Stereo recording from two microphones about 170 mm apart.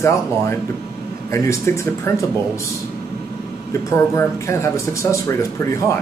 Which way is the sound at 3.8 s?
15° left (ahead or behind).